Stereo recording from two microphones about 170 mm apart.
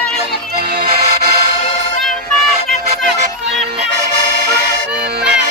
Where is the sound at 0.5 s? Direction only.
65° right (ahead or behind).